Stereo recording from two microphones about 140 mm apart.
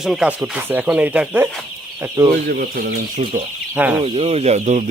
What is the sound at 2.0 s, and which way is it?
Speech, 20° right (ahead or behind).